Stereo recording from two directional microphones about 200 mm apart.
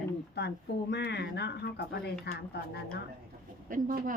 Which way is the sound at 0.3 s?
55° left (ahead or behind).